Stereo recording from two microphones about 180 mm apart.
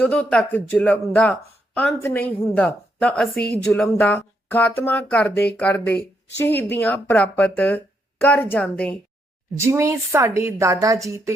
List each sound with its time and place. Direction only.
0.0 s speech: 5° left (ahead or behind)
9.6 s a woman's voice: 15° right (ahead or behind)